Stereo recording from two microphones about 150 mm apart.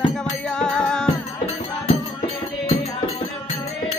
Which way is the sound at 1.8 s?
40° left (ahead or behind).